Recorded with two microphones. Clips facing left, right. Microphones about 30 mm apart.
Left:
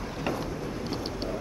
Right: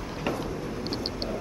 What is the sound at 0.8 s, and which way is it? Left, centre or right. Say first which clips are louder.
Vehicle: right 1 dB; right.